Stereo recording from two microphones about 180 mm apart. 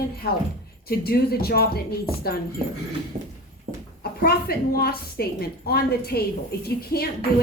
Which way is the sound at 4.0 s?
60° left (ahead or behind).